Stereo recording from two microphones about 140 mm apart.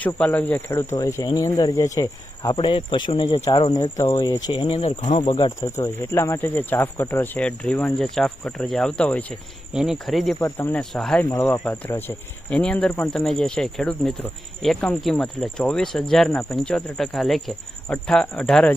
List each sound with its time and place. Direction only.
0.0 s speech: 10° left (ahead or behind); by 3.8 s 40° left (ahead or behind)
3.8 s speech: 20° left (ahead or behind)
5.6 s speech: 20° left (ahead or behind)
9.7 s speech: 5° right (ahead or behind)
10.4 s speech: 20° left (ahead or behind)
10.8 s speech: 5° left (ahead or behind)
11.3 s speech: 20° left (ahead or behind)